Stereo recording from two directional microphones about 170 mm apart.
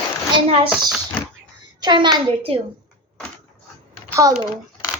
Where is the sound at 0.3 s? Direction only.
35° right (ahead or behind).